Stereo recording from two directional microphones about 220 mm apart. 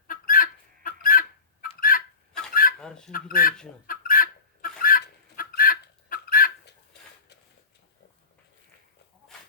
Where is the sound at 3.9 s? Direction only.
40° left (ahead or behind).